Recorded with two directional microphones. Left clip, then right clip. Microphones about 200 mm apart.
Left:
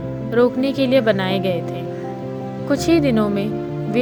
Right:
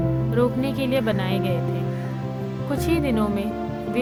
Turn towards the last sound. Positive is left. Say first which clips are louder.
# left 5 dB
turn(degrees=25)  # may be behind; listen again after turning